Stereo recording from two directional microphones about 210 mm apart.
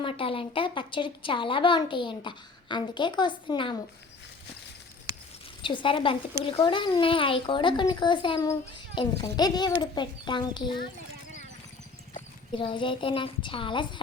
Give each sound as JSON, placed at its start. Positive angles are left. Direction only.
{"t": 0.0, "sound": "a woman's voice", "side_deg": 25}
{"t": 5.6, "sound": "a woman's voice", "side_deg": 25}
{"t": 12.5, "sound": "a woman's voice", "side_deg": 25}